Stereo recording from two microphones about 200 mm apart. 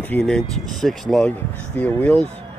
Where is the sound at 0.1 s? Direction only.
5° left (ahead or behind).